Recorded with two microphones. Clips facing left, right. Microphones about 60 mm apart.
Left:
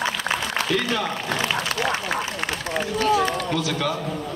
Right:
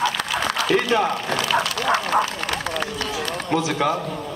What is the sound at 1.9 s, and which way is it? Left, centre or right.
Speech, right.